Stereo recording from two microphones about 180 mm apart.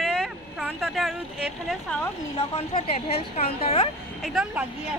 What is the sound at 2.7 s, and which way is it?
Speech, 35° left (ahead or behind).